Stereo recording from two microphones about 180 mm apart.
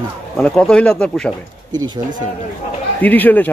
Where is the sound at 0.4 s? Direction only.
5° left (ahead or behind).